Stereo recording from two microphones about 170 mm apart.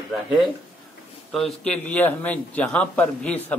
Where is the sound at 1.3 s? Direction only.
5° left (ahead or behind).